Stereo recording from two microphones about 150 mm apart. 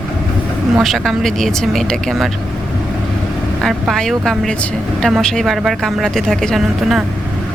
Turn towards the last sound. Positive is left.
turn(degrees=0)  # may be behind; listen again after turning